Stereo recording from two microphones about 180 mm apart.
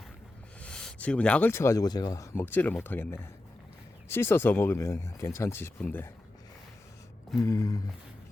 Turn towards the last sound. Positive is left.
turn(degrees=20)  # may be behind; listen again after turning